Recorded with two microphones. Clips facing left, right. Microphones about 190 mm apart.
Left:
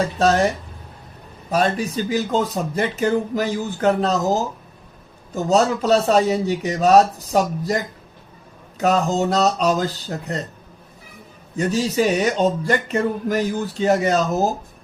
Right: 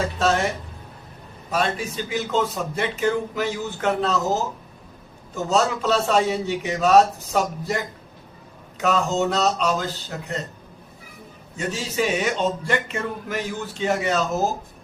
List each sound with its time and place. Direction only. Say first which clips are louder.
0.2 s speech: left 5 dB; 40° left (ahead or behind)
1.5 s speech: left 4 dB; 40° left (ahead or behind)
5.3 s speech: left 4 dB; 35° left (ahead or behind)
8.8 s speech: left 3 dB; 40° left (ahead or behind)
11.5 s speech: left 6 dB; 40° left (ahead or behind)